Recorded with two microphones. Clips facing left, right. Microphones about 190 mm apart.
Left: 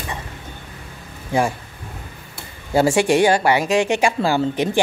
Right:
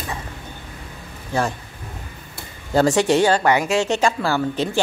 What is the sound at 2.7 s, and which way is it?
A woman's voice, 10° left (ahead or behind).